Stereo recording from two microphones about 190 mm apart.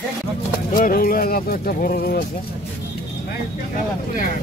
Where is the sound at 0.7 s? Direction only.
45° left (ahead or behind).